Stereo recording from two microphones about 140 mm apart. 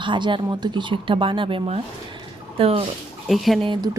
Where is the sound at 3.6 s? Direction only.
35° right (ahead or behind).